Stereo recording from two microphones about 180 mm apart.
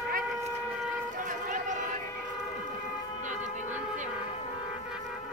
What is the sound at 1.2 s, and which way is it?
Vehicle, 45° right (ahead or behind).